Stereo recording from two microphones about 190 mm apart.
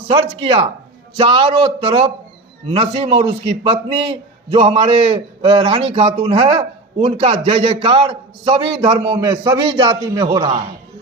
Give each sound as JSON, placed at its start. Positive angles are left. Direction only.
{"t": 0.1, "sound": "a man's voice", "side_deg": -30}